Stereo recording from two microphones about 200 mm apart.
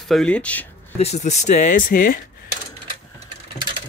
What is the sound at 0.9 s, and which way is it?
Speech, 35° left (ahead or behind).